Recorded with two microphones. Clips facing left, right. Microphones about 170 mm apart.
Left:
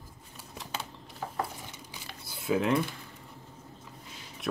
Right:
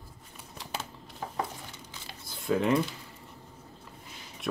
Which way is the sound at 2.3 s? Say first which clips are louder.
Right 1 dB; 5° left (ahead or behind).